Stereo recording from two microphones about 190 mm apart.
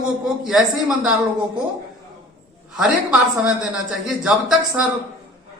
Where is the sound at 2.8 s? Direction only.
5° right (ahead or behind).